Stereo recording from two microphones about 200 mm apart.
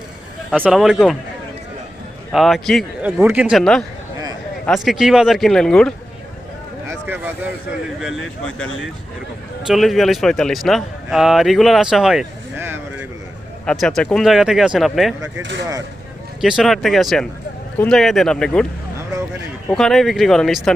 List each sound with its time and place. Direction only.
0.5 s a man's voice: 5° right (ahead or behind)
2.3 s a man's voice: centre (ahead or behind)
6.8 s a sound: 10° right (ahead or behind)
8.0 s a man's voice: centre (ahead or behind)
13.7 s a man's voice: centre (ahead or behind)
16.4 s a man's voice: 5° right (ahead or behind)
19.6 s a man's voice: centre (ahead or behind)